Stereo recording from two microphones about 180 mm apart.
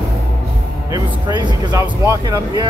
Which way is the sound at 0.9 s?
25° right (ahead or behind).